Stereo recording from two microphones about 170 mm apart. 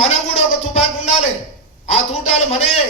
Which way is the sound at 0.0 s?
40° left (ahead or behind).